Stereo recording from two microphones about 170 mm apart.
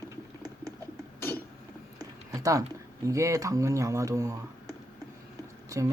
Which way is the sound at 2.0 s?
20° right (ahead or behind).